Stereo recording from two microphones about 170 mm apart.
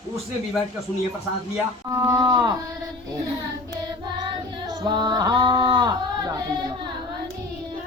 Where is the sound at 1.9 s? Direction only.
20° right (ahead or behind).